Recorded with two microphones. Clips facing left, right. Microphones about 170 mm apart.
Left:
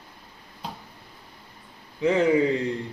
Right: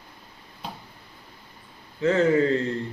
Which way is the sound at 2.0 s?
15° left (ahead or behind).